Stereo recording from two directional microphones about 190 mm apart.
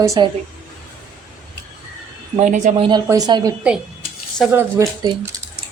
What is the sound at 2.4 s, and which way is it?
A woman's voice, 40° right (ahead or behind).